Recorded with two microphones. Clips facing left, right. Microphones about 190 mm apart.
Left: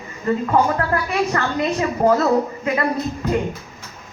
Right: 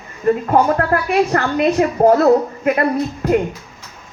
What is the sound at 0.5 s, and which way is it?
A woman's voice, 60° right (ahead or behind).